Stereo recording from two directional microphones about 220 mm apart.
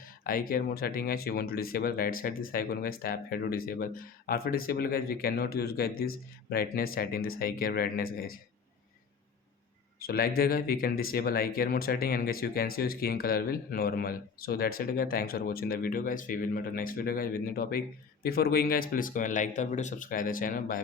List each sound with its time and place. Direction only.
0.0 s speech: 40° left (ahead or behind)
10.0 s speech: 40° left (ahead or behind)